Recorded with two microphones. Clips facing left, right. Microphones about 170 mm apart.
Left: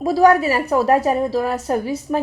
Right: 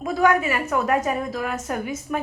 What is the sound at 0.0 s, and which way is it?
A woman's voice, 35° left (ahead or behind).